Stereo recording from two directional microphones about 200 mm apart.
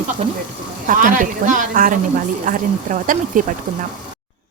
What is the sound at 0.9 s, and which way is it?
Speech, 40° right (ahead or behind).